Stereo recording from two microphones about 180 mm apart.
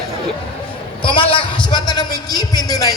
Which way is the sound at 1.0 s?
30° left (ahead or behind).